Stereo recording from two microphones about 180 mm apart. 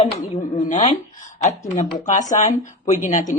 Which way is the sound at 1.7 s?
45° left (ahead or behind).